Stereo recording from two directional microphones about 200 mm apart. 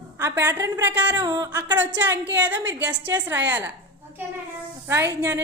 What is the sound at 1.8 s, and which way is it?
A woman's voice, 10° right (ahead or behind).